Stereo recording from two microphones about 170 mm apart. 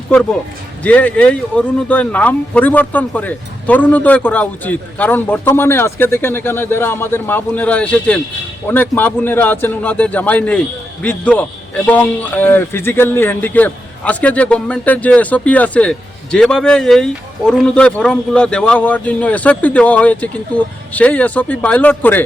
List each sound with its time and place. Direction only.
0.1 s a man's voice: 5° left (ahead or behind)